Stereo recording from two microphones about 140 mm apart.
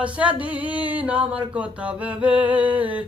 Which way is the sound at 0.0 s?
10° right (ahead or behind).